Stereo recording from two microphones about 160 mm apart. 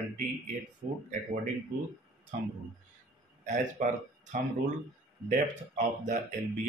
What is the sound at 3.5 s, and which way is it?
Speech, 50° right (ahead or behind).